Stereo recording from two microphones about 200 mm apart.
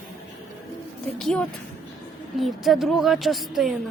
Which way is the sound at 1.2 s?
5° left (ahead or behind).